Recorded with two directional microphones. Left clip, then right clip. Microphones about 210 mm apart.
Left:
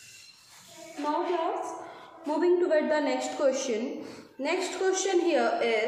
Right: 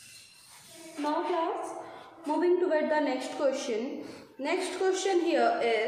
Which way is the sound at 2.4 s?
15° left (ahead or behind).